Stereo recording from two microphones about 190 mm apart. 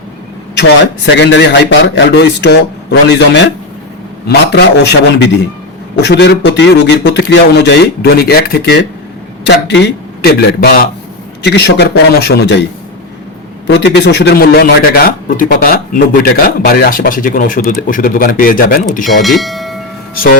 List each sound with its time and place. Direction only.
0.5 s speech: 65° left (ahead or behind)
13.7 s a man's voice: 65° left (ahead or behind)
19.2 s speech: centre (ahead or behind)